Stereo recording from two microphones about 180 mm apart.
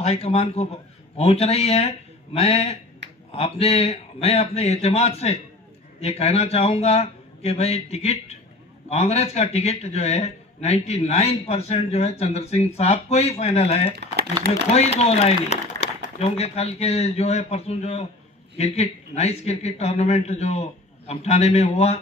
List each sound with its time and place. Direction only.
0.0 s a man's voice: 35° left (ahead or behind)